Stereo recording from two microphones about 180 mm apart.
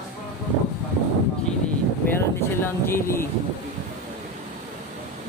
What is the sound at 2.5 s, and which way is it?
Speech, 10° left (ahead or behind).